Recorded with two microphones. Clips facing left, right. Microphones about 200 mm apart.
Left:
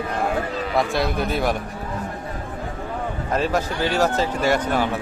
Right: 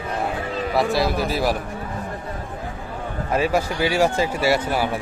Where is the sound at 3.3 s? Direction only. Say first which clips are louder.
Right 2 dB; 10° right (ahead or behind).